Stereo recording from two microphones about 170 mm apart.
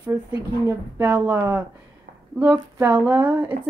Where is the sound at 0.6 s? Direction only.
10° right (ahead or behind).